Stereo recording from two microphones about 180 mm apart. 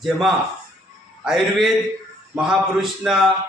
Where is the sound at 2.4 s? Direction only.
5° right (ahead or behind).